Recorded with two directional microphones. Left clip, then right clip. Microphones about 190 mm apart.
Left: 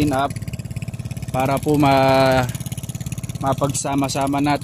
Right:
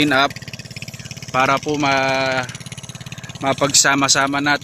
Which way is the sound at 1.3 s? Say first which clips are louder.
Right 5 dB; 5° right (ahead or behind).